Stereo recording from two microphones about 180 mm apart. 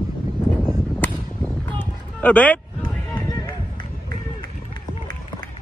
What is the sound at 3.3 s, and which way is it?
Run, 25° left (ahead or behind).